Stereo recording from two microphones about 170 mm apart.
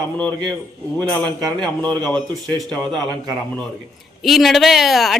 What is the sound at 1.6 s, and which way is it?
Speech, 5° left (ahead or behind).